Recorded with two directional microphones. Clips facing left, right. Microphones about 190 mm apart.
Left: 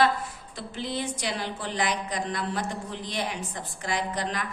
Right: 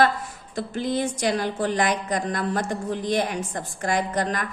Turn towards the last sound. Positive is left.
turn(degrees=-50)  # may be behind; listen again after turning